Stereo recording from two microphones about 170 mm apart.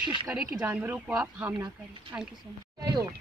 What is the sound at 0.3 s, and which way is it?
Speech, 10° right (ahead or behind).